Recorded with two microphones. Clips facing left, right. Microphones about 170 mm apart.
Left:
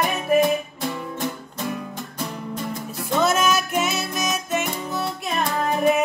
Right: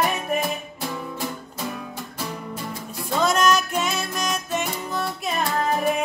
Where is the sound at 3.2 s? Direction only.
5° left (ahead or behind).